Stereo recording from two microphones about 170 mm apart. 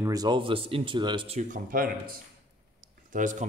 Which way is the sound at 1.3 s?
50° right (ahead or behind).